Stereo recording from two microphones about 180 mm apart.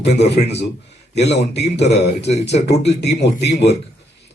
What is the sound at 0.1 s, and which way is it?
Speech, 70° left (ahead or behind).